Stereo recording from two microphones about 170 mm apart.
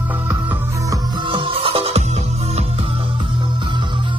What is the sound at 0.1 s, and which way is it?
Music, 15° right (ahead or behind).